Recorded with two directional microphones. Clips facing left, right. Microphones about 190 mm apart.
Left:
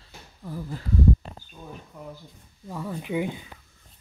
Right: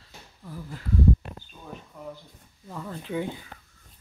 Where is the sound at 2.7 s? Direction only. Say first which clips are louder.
Left 3 dB; 10° left (ahead or behind).